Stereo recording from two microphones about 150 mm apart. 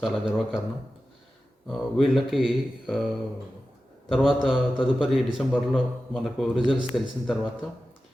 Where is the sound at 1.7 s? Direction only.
Centre (ahead or behind).